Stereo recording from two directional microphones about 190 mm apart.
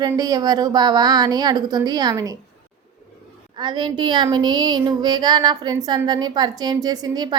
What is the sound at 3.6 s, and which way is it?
Speech, 25° right (ahead or behind).